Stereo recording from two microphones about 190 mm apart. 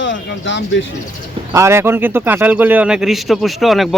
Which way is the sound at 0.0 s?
75° left (ahead or behind).